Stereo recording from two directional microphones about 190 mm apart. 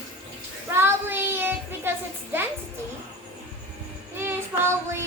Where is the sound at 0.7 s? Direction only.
10° right (ahead or behind).